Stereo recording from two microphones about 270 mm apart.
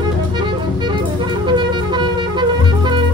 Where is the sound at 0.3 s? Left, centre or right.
Centre.